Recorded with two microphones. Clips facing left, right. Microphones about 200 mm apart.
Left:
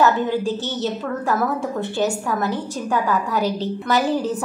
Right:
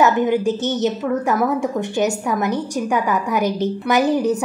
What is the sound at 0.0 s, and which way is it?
A woman's voice, 15° right (ahead or behind).